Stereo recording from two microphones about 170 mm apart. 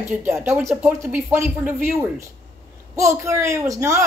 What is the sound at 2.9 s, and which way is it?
Speech, 15° right (ahead or behind).